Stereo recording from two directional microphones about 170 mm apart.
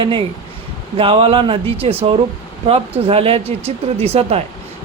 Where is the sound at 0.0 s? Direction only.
30° right (ahead or behind).